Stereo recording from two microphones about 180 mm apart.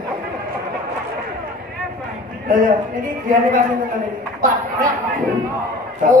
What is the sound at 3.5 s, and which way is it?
Speech, 55° right (ahead or behind).